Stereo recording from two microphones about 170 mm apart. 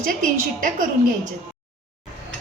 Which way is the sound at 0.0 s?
50° right (ahead or behind).